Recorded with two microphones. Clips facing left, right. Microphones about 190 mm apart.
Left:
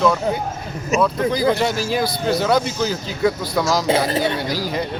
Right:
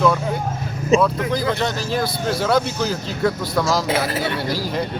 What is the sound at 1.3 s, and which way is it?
Speech, 5° left (ahead or behind).